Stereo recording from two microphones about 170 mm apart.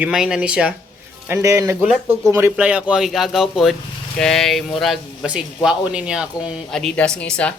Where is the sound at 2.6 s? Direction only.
5° right (ahead or behind).